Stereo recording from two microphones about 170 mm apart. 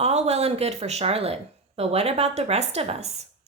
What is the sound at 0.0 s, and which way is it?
Speech, 40° right (ahead or behind).